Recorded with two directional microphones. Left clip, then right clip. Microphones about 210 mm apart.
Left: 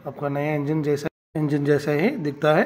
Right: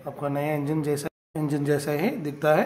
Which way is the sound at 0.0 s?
10° left (ahead or behind).